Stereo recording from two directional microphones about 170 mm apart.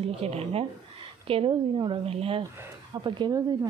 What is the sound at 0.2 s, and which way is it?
A woman's voice, 35° right (ahead or behind).